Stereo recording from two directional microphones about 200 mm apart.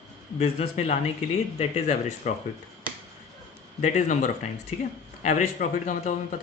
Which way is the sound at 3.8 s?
40° left (ahead or behind).